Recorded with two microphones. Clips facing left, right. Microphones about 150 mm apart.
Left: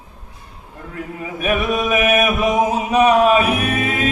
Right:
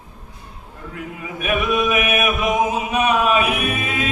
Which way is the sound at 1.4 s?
35° left (ahead or behind).